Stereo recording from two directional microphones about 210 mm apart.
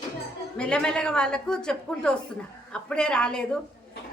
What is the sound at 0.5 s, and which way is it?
A woman's voice, 5° left (ahead or behind).